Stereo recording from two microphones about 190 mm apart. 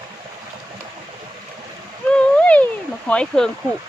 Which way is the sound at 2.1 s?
5° left (ahead or behind).